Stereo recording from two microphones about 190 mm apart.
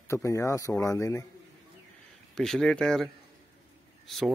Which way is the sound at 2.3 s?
Centre (ahead or behind).